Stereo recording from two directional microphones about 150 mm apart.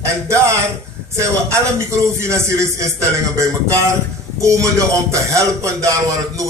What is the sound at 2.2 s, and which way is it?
A man's voice, 20° right (ahead or behind).